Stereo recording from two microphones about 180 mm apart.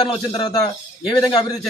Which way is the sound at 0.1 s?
20° left (ahead or behind).